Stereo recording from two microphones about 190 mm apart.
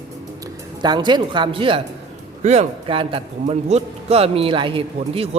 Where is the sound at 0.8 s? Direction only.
25° right (ahead or behind).